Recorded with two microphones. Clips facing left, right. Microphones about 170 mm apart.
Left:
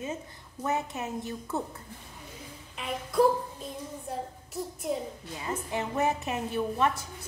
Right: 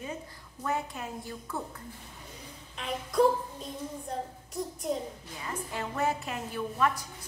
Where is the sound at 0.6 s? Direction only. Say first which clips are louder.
Left 2 dB; 20° left (ahead or behind).